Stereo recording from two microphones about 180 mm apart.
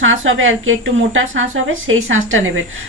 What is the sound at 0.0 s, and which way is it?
A woman's voice, 90° right.